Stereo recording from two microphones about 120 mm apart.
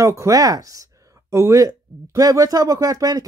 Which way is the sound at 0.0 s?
25° right (ahead or behind).